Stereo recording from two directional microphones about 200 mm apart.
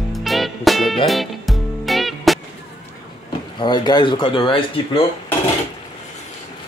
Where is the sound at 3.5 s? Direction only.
20° left (ahead or behind).